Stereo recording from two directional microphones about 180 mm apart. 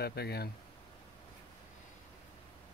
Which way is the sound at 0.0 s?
65° left (ahead or behind).